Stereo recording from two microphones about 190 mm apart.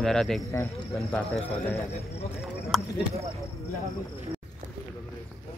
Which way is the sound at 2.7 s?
Centre (ahead or behind).